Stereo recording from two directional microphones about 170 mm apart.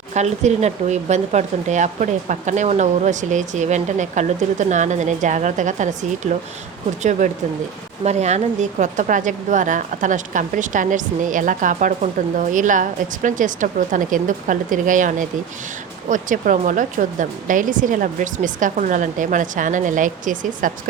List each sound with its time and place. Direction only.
0.1 s a woman's voice: 45° right (ahead or behind)